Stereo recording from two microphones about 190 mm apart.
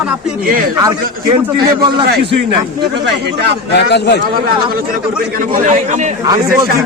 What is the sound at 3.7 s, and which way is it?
Speech, 60° left (ahead or behind).